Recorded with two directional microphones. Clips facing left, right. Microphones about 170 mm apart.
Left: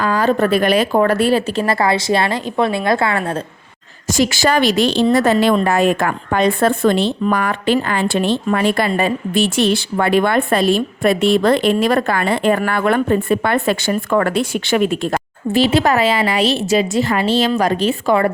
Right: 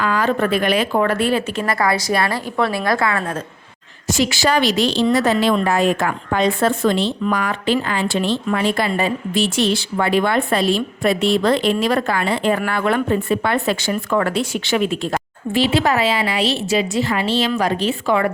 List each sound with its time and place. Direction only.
0.0 s a woman's voice: 35° left (ahead or behind)
4.1 s a woman's voice: 45° left (ahead or behind)